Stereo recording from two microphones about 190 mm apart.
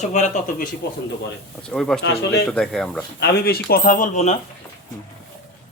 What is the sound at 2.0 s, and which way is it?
Speech, 65° left (ahead or behind).